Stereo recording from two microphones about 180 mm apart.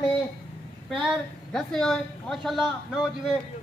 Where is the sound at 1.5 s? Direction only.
5° left (ahead or behind).